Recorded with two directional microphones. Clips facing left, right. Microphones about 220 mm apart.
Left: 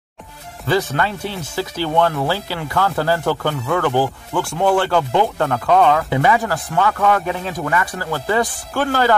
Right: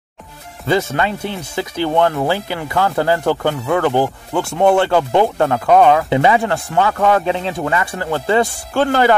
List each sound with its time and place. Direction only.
0.7 s speech: 20° right (ahead or behind)